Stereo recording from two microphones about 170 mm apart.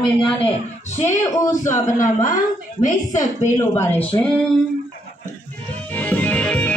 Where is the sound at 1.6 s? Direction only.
50° left (ahead or behind).